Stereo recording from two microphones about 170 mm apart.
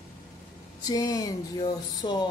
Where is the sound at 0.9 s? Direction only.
25° left (ahead or behind).